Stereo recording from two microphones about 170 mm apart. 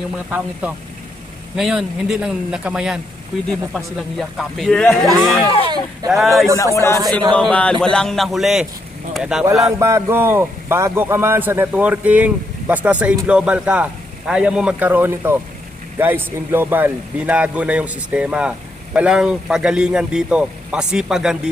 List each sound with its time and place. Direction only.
0.3 s a man's voice: 10° right (ahead or behind)
6.5 s speech: 20° left (ahead or behind)
7.3 s speech: 5° left (ahead or behind)
9.7 s a man's voice: 15° right (ahead or behind)